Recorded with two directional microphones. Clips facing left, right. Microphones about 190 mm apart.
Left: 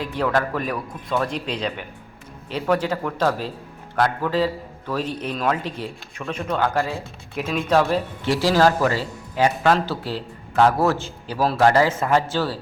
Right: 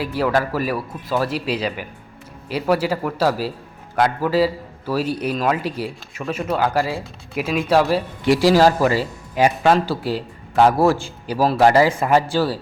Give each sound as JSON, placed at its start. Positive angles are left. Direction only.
{"t": 0.0, "sound": "a man's voice", "side_deg": -5}